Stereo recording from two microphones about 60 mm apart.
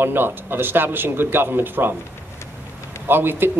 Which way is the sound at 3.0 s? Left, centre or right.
Right.